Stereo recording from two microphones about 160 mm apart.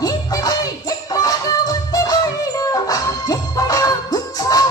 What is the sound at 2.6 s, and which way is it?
Music, 20° left (ahead or behind).